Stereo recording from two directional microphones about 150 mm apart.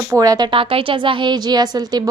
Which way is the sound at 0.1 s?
25° right (ahead or behind).